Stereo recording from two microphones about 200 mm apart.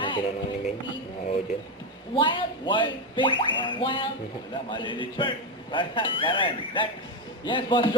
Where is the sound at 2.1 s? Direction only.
25° left (ahead or behind).